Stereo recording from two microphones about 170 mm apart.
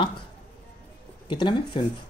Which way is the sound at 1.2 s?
25° left (ahead or behind).